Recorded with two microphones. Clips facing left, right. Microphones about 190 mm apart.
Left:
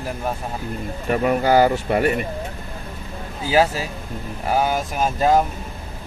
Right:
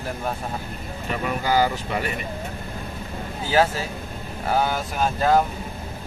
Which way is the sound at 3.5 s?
10° left (ahead or behind).